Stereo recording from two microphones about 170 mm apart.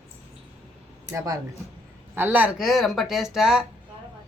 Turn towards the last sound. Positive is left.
turn(degrees=-5)  # may be behind; listen again after turning